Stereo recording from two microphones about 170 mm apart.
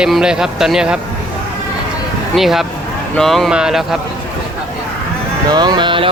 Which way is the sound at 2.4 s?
Centre (ahead or behind).